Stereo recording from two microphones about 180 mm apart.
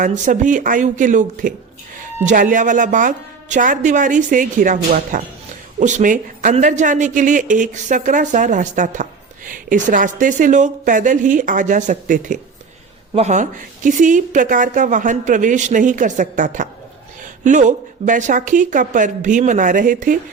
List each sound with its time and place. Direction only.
0.0 s a woman's voice: 45° right (ahead or behind)